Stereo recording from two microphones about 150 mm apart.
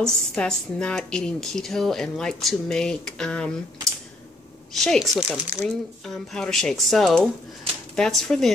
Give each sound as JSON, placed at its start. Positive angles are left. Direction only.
{"t": 0.0, "sound": "a woman's voice", "side_deg": 5}
{"t": 4.7, "sound": "a woman's voice", "side_deg": 0}